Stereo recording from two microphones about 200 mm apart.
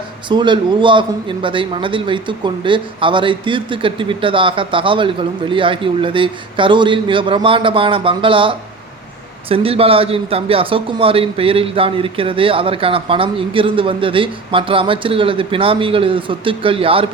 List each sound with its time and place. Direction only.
0.3 s speech: 25° right (ahead or behind)